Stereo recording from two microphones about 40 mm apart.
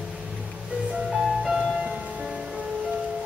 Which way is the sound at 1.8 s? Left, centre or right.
Centre.